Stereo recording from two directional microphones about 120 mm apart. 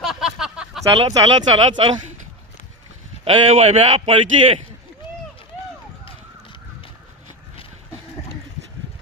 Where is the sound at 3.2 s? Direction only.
55° right (ahead or behind).